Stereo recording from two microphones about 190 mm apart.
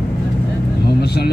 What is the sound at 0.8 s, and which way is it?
Vehicle, 60° left (ahead or behind).